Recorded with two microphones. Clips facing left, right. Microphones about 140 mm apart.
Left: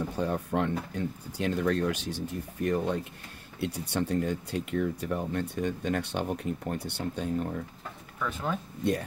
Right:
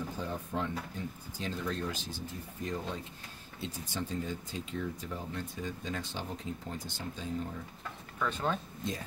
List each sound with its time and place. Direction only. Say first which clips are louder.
0.1 s speech: left 7 dB; 70° left (ahead or behind)
8.2 s speech: left 1 dB; 5° left (ahead or behind)